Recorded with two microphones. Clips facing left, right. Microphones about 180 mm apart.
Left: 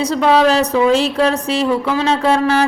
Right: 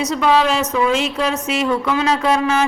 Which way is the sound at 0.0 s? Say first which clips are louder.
Left 3 dB; 30° left (ahead or behind).